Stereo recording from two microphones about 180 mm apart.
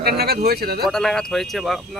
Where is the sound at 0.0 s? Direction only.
60° right (ahead or behind).